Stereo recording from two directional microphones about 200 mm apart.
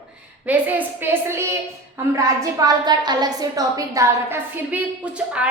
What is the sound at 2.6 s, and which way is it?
A woman's voice, 20° right (ahead or behind).